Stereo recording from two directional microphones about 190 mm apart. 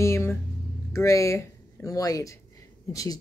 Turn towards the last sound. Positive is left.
turn(degrees=20)  # may be behind; listen again after turning